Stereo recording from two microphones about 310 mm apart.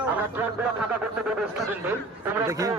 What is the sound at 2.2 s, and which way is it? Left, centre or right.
Speech, centre.